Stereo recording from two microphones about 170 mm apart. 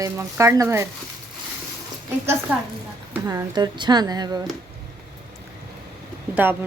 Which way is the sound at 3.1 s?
20° right (ahead or behind).